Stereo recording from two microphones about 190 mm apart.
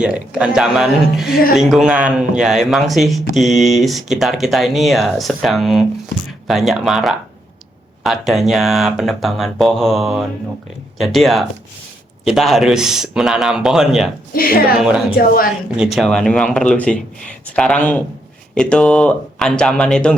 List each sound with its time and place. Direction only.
0.0 s speech: 5° right (ahead or behind)
14.3 s speech: 50° left (ahead or behind)
14.8 s speech: 5° right (ahead or behind)